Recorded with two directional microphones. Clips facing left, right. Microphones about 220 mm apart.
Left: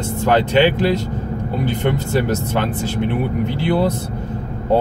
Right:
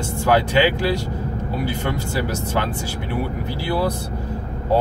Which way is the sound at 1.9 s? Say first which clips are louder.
Left 5 dB; 20° left (ahead or behind).